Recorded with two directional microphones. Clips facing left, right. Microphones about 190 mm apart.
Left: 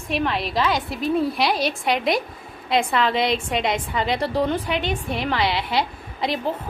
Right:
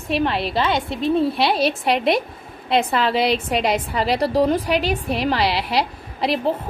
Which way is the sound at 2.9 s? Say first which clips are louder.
Right 2 dB; 35° right (ahead or behind).